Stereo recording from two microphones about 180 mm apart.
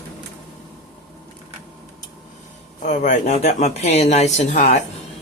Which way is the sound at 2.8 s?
40° left (ahead or behind).